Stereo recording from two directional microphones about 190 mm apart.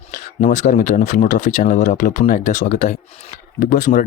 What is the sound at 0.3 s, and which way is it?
Speech, 40° left (ahead or behind).